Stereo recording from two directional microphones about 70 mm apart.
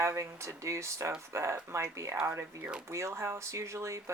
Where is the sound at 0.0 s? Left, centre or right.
Right.